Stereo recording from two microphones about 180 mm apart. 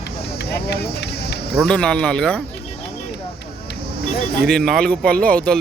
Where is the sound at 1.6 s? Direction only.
5° left (ahead or behind).